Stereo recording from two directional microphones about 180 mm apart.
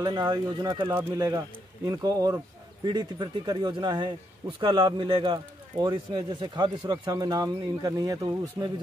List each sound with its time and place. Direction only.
0.0 s speech: 20° right (ahead or behind)